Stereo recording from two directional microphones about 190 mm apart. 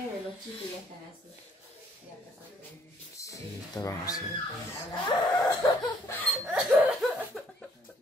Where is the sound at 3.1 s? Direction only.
15° left (ahead or behind).